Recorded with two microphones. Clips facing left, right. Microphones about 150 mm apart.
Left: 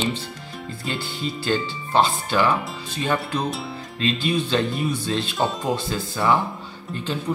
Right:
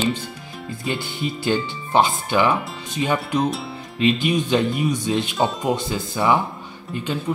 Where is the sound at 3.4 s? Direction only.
Centre (ahead or behind).